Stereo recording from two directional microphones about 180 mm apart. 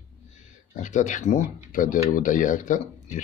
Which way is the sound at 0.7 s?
45° left (ahead or behind).